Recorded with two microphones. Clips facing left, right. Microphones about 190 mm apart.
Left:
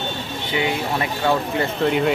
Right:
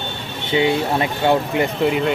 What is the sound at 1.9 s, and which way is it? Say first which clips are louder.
Speech: even; centre (ahead or behind).